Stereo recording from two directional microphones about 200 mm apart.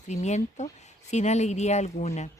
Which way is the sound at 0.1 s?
35° left (ahead or behind).